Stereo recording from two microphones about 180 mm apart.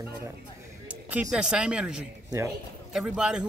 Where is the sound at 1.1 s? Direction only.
5° right (ahead or behind).